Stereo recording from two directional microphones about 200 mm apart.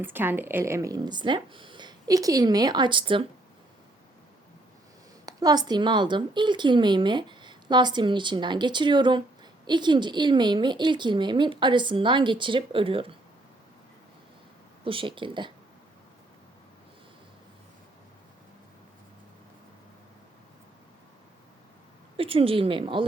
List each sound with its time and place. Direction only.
0.0 s a woman's voice: 10° right (ahead or behind)
5.2 s a woman's voice: 20° right (ahead or behind)
14.8 s a woman's voice: 25° right (ahead or behind)
22.2 s a woman's voice: 30° right (ahead or behind)